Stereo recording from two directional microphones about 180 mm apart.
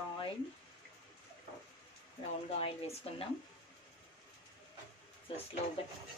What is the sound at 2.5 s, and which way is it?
Speech, 30° left (ahead or behind).